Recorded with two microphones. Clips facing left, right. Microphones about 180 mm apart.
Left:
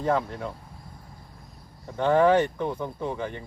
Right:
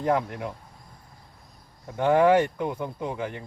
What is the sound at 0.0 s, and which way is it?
Speech, 10° right (ahead or behind).